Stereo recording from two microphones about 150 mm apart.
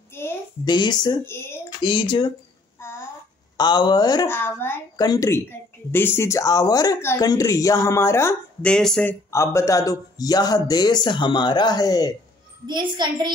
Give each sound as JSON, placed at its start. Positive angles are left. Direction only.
{"t": 0.1, "sound": "a sound", "side_deg": 15}
{"t": 0.7, "sound": "speech", "side_deg": 30}
{"t": 1.2, "sound": "speech", "side_deg": 15}
{"t": 1.8, "sound": "speech", "side_deg": 30}
{"t": 3.5, "sound": "speech", "side_deg": 30}
{"t": 4.3, "sound": "speech", "side_deg": 15}
{"t": 4.9, "sound": "speech", "side_deg": 25}
{"t": 8.6, "sound": "speech", "side_deg": 5}
{"t": 9.3, "sound": "speech", "side_deg": 20}
{"t": 12.6, "sound": "a child's voice", "side_deg": -30}